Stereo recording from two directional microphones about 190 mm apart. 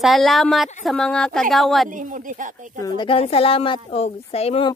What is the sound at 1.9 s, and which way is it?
Speech, 45° right (ahead or behind).